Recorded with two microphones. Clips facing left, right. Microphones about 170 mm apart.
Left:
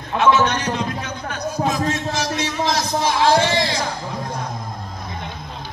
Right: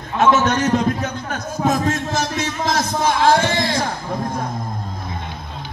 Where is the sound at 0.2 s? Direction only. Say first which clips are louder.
Right 2 dB; 50° right (ahead or behind).